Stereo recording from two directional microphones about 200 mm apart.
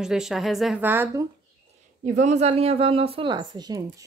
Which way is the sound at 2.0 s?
35° right (ahead or behind).